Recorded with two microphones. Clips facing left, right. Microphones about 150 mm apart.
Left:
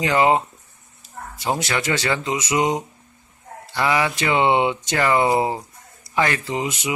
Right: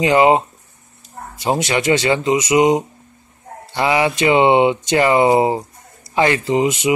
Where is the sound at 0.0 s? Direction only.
20° right (ahead or behind).